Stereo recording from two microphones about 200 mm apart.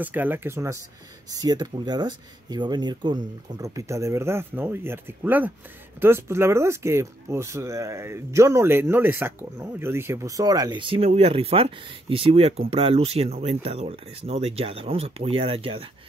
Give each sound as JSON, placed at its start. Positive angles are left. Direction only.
{"t": 0.0, "sound": "speech", "side_deg": -10}